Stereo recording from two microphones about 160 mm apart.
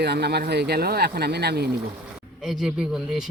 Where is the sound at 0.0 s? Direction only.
90° right.